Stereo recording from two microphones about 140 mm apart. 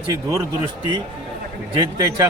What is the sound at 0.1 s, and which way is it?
Speech, 25° right (ahead or behind).